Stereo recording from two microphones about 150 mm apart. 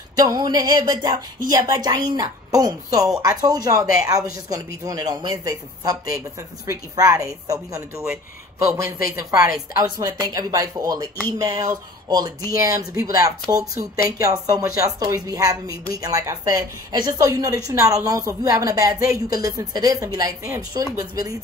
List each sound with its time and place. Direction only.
0.2 s a woman's voice: 25° right (ahead or behind)